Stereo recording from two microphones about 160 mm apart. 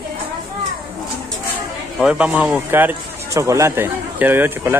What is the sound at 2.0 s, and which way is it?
Speech, 5° right (ahead or behind).